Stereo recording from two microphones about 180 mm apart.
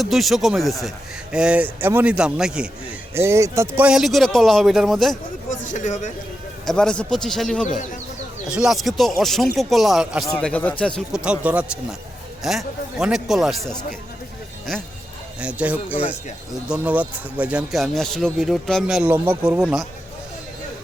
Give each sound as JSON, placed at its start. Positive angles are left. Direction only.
{"t": 0.0, "sound": "speech", "side_deg": 0}
{"t": 3.2, "sound": "speech", "side_deg": -15}
{"t": 5.5, "sound": "speech", "side_deg": 45}
{"t": 6.7, "sound": "speech", "side_deg": 5}
{"t": 10.4, "sound": "speech", "side_deg": 10}
{"t": 11.2, "sound": "speech", "side_deg": -5}
{"t": 15.4, "sound": "speech", "side_deg": -5}